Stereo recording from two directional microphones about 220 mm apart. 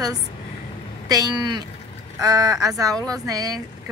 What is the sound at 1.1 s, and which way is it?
Speech, 20° right (ahead or behind).